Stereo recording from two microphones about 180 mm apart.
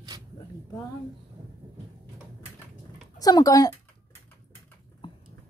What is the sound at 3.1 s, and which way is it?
Speech, 20° left (ahead or behind).